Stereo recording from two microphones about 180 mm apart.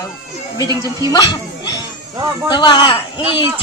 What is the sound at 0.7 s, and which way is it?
Speech, 20° right (ahead or behind).